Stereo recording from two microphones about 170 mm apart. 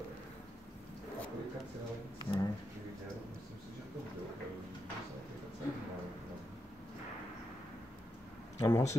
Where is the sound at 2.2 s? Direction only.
20° left (ahead or behind).